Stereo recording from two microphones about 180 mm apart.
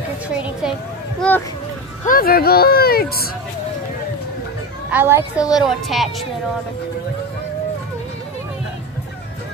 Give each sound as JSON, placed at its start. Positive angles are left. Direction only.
{"t": 0.4, "sound": "speech", "side_deg": -5}
{"t": 2.0, "sound": "speech", "side_deg": 55}
{"t": 4.9, "sound": "a child's voice", "side_deg": -15}
{"t": 5.5, "sound": "speech", "side_deg": 0}